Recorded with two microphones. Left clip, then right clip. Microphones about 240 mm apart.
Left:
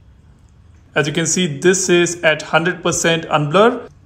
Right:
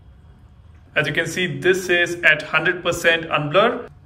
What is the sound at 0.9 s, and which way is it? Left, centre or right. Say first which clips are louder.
A man's voice: left 3 dB; centre.